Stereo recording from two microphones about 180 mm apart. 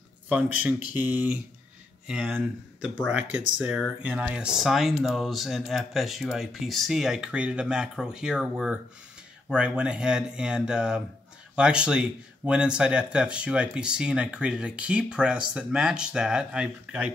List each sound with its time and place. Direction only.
0.3 s speech: 10° right (ahead or behind)